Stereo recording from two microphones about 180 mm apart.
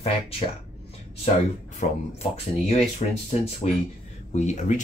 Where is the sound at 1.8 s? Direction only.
45° left (ahead or behind).